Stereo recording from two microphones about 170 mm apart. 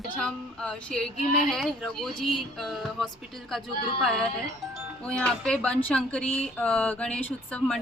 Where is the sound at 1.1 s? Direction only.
40° left (ahead or behind).